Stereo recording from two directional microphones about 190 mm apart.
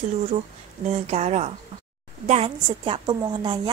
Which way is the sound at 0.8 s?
35° right (ahead or behind).